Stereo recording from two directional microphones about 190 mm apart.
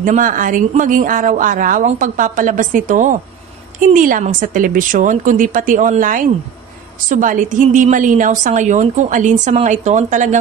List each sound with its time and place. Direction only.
0.0 s a woman's voice: 45° right (ahead or behind)